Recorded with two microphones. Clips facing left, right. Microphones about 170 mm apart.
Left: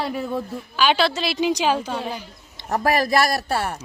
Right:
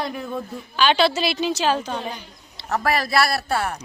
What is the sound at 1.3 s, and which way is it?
Speech, 15° left (ahead or behind).